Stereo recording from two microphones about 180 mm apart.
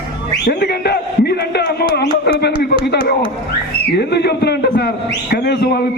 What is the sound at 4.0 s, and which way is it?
A man's voice, 65° left (ahead or behind).